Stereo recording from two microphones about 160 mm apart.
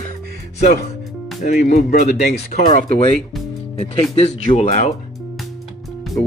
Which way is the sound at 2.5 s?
50° left (ahead or behind).